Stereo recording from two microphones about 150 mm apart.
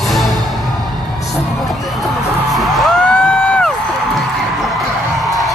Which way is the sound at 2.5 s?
Centre (ahead or behind).